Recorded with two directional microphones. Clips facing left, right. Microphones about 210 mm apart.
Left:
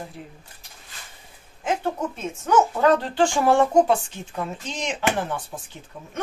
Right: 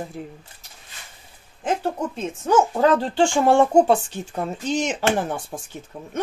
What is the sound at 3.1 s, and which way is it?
Speech, 25° right (ahead or behind).